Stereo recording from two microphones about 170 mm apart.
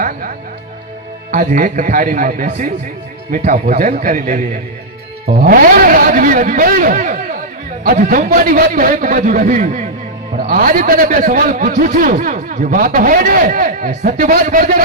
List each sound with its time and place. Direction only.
1.3 s a man's voice: 55° right (ahead or behind)
10.3 s a man's voice: 55° right (ahead or behind)